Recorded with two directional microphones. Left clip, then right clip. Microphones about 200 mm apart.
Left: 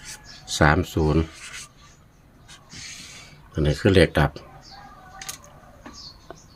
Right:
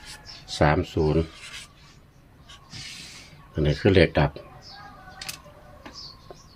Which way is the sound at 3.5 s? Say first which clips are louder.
Left 1 dB; 15° left (ahead or behind).